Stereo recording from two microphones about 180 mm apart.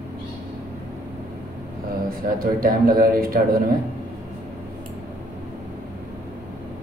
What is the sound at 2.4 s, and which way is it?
A man's voice, 50° right (ahead or behind).